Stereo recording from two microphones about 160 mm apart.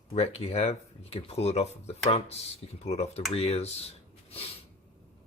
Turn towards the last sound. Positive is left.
turn(degrees=40)  # may be behind; listen again after turning